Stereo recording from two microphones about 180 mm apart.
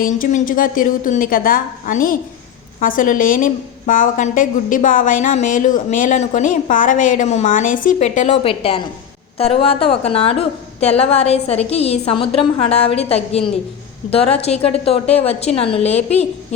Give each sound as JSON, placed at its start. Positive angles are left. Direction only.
{"t": 0.0, "sound": "a woman's voice", "side_deg": 45}